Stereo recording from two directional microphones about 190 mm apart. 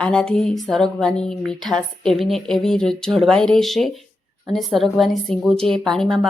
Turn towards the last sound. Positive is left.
turn(degrees=0)  # may be behind; listen again after turning